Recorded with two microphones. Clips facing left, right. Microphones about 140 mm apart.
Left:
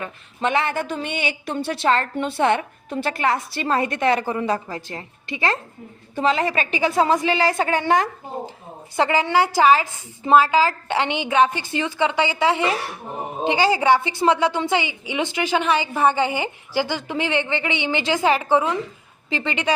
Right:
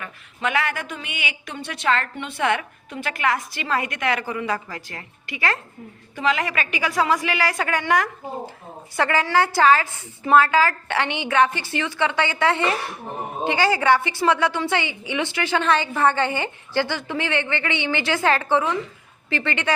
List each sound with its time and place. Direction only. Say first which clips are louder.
0.0 s a woman's voice: left 3 dB; 25° left (ahead or behind)